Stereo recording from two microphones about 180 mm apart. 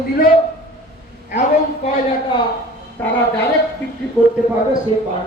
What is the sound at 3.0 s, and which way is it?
Speech, 10° left (ahead or behind).